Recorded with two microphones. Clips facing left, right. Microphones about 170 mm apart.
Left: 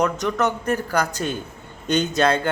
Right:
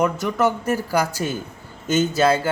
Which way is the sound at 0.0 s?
10° right (ahead or behind).